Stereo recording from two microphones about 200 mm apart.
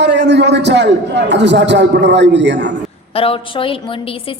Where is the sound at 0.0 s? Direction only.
60° right (ahead or behind).